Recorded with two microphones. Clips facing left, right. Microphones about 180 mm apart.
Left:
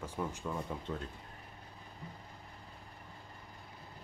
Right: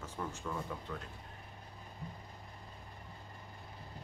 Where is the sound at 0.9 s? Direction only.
25° left (ahead or behind).